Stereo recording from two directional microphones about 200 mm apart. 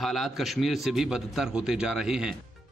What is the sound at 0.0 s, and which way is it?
A man's voice, centre (ahead or behind).